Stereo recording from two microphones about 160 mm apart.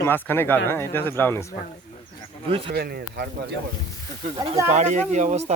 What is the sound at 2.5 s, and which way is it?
Speech, 35° right (ahead or behind).